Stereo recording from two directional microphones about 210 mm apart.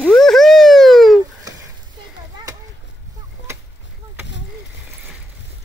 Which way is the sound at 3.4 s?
60° left (ahead or behind).